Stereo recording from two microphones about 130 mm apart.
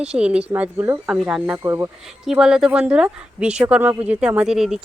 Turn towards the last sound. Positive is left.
turn(degrees=-5)  # may be behind; listen again after turning